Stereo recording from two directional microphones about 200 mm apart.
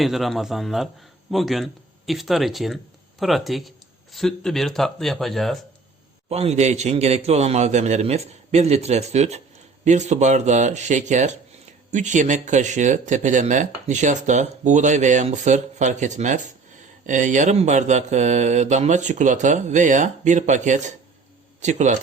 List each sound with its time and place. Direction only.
0.0 s speech: centre (ahead or behind)
6.2 s speech: 30° right (ahead or behind)